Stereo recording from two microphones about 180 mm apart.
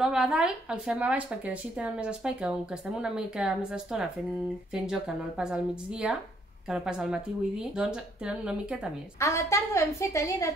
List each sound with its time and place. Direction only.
0.0 s speech: 5° right (ahead or behind)
9.2 s a woman's voice: 15° left (ahead or behind)